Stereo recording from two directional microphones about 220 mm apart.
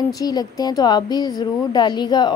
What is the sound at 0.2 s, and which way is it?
A woman's voice, 15° left (ahead or behind).